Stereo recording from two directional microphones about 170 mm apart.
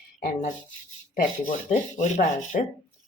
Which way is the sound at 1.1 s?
45° left (ahead or behind).